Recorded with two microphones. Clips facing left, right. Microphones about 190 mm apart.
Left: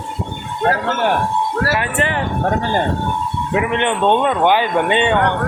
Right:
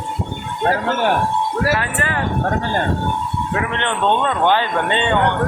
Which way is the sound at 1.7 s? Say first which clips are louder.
Left 3 dB; 20° left (ahead or behind).